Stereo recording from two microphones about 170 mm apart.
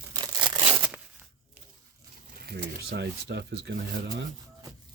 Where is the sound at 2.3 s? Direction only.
70° right (ahead or behind).